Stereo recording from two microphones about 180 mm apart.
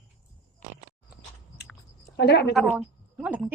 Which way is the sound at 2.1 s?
70° left (ahead or behind).